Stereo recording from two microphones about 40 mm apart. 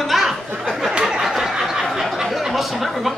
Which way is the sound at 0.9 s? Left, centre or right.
Right.